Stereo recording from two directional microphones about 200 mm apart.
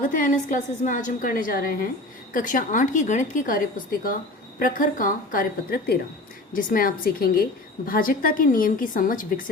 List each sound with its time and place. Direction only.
0.0 s a woman's voice: 40° left (ahead or behind)
4.6 s a woman's voice: 45° left (ahead or behind)